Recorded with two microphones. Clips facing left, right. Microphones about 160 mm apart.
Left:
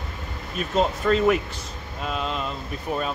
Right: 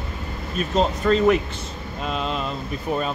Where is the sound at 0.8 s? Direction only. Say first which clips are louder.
Right 1 dB; 5° left (ahead or behind).